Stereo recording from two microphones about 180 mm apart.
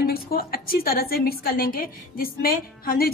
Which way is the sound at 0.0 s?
55° left (ahead or behind).